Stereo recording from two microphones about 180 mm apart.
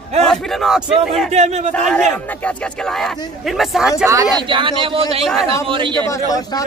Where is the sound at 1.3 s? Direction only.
40° right (ahead or behind).